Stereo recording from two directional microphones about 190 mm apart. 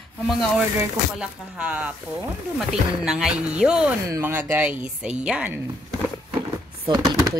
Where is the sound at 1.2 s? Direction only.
5° right (ahead or behind).